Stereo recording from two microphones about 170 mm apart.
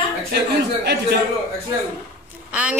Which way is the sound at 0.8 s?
75° right (ahead or behind).